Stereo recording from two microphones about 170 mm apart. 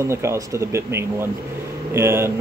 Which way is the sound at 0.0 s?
15° right (ahead or behind).